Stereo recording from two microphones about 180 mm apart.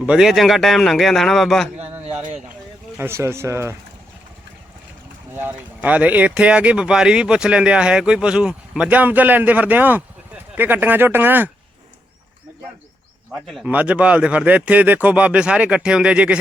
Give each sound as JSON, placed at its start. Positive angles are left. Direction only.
{"t": 0.0, "sound": "speech", "side_deg": -5}
{"t": 1.7, "sound": "a sound", "side_deg": -35}
{"t": 3.0, "sound": "speech", "side_deg": -15}
{"t": 5.4, "sound": "speech", "side_deg": -10}
{"t": 13.3, "sound": "speech", "side_deg": 0}